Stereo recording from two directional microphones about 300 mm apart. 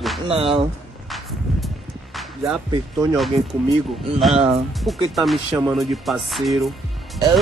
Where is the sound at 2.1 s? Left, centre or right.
Centre.